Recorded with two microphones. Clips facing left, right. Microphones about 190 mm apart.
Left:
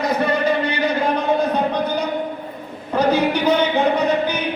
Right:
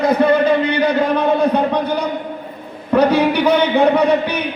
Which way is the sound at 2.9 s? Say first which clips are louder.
Right 4 dB; 60° right (ahead or behind).